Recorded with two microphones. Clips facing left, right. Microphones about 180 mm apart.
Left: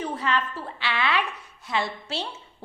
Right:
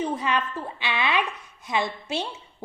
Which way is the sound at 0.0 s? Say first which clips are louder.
Right 1 dB; 15° right (ahead or behind).